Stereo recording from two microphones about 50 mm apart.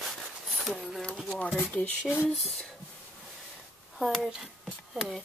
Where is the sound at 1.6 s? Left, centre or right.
Left.